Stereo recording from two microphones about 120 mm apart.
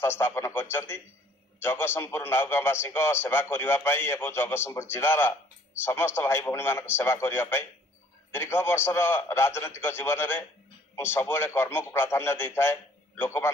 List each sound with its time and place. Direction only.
0.0 s a man's voice: 20° left (ahead or behind)